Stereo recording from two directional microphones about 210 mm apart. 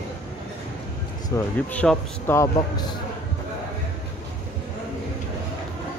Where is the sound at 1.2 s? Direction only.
10° left (ahead or behind).